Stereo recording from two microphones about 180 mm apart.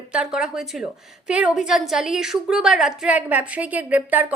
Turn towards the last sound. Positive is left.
turn(degrees=-10)  # may be behind; listen again after turning